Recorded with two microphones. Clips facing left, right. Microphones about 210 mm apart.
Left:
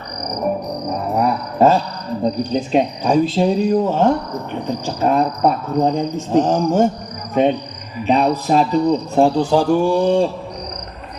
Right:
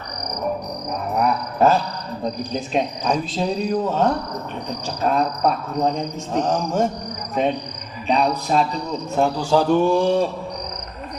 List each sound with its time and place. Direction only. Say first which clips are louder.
1.1 s a sound: left 1 dB; 25° left (ahead or behind)
2.2 s a man's voice: left 7 dB; 30° left (ahead or behind)
8.1 s a man's voice: left 4 dB; 35° left (ahead or behind)
9.4 s speech: left 2 dB; 15° left (ahead or behind)